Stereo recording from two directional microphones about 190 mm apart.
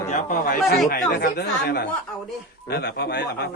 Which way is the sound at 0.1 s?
40° left (ahead or behind).